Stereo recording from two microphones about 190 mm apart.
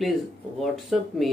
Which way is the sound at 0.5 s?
Centre (ahead or behind).